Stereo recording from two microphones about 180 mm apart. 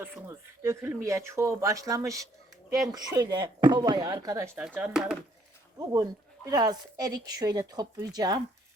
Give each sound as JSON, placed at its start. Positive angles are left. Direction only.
{"t": 0.0, "sound": "speech", "side_deg": -15}
{"t": 4.5, "sound": "speech", "side_deg": -5}
{"t": 5.8, "sound": "speech", "side_deg": -20}